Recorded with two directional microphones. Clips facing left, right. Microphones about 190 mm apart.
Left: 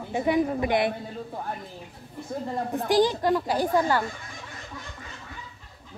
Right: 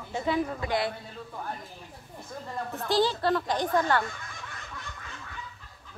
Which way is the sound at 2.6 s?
35° left (ahead or behind).